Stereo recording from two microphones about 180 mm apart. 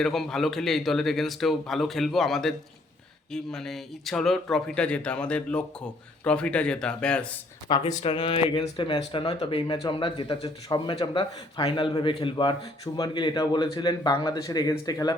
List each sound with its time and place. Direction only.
0.0 s speech: centre (ahead or behind)
7.7 s speech: 25° left (ahead or behind)